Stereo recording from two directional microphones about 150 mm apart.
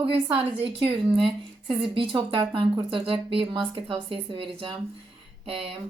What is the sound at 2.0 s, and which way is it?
Speech, 30° right (ahead or behind).